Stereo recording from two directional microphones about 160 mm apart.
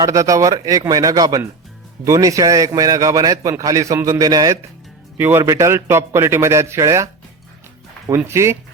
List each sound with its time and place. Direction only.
0.0 s a man's voice: 20° right (ahead or behind)